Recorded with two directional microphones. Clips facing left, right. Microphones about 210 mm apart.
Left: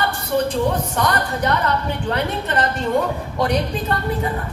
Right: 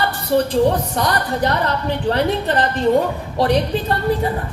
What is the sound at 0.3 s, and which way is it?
A man's voice, 30° right (ahead or behind).